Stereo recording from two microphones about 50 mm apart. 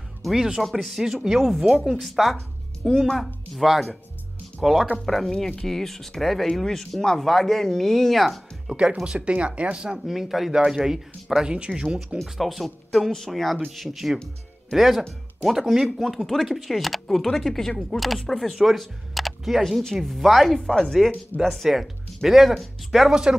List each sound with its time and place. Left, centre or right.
0.2 s speech: centre
1.4 s speech: centre
9.0 s speech: centre
9.9 s speech: centre
12.2 s speech: centre
21.4 s speech: centre
23.0 s speech: centre